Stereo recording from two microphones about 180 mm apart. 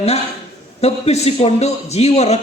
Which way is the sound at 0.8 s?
35° left (ahead or behind).